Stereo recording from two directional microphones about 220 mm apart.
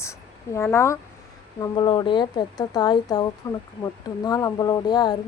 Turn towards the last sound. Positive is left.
turn(degrees=20)  # may be behind; listen again after turning